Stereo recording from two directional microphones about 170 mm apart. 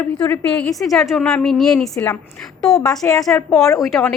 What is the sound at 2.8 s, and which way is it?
Speech, 20° left (ahead or behind).